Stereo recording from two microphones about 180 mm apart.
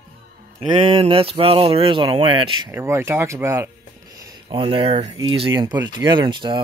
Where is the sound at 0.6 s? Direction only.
30° right (ahead or behind).